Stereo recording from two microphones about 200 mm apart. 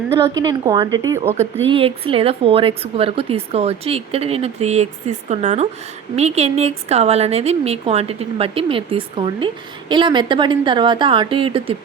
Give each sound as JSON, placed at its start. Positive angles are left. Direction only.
{"t": 0.6, "sound": "a woman's voice", "side_deg": -25}
{"t": 1.1, "sound": "speech", "side_deg": -10}
{"t": 1.6, "sound": "a woman's voice", "side_deg": -25}